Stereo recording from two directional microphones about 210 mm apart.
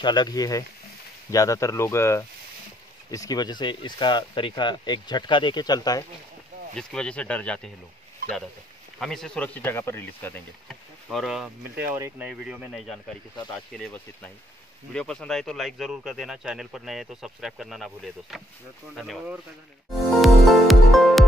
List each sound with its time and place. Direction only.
0.0 s speech: 20° left (ahead or behind)
6.7 s a man's voice: 5° left (ahead or behind)
9.0 s speech: centre (ahead or behind)
10.7 s a man's voice: centre (ahead or behind)
19.9 s music: centre (ahead or behind)